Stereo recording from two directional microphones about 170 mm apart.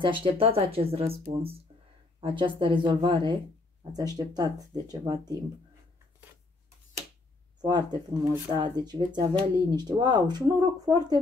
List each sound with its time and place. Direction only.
0.0 s speech: 30° right (ahead or behind)
7.6 s speech: 25° right (ahead or behind)